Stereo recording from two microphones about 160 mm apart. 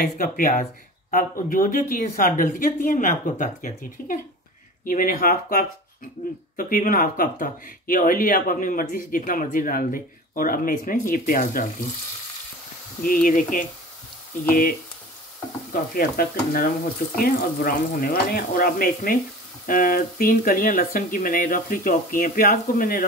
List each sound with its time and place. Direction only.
0.0 s speech: 65° left (ahead or behind)
13.0 s speech: 60° left (ahead or behind)
15.7 s speech: 60° left (ahead or behind)